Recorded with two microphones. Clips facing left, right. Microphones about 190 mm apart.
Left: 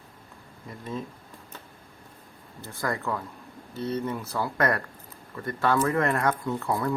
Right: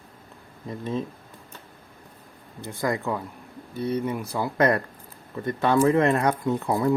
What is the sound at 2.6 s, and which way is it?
Speech, 15° right (ahead or behind).